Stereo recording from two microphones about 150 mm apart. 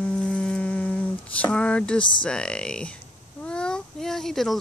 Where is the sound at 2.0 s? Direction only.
30° left (ahead or behind).